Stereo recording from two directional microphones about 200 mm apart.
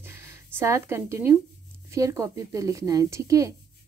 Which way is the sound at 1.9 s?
15° right (ahead or behind).